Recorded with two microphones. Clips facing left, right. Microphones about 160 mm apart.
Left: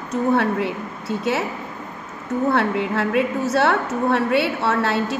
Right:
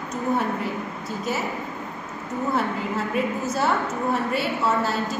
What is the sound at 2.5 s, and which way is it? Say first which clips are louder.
A woman's voice: left 3 dB; 75° left (ahead or behind).